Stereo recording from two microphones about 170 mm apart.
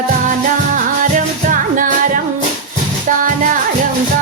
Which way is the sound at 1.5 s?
50° right (ahead or behind).